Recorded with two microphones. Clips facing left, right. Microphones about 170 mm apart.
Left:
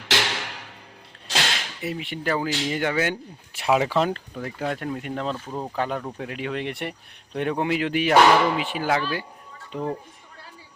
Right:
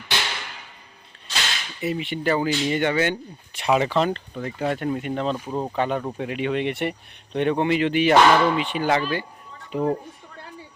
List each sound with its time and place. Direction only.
0.1 s a sound: 80° left
1.8 s speech: centre (ahead or behind)
5.3 s speech: 15° right (ahead or behind)
5.7 s speech: centre (ahead or behind)
9.7 s speech: 10° right (ahead or behind)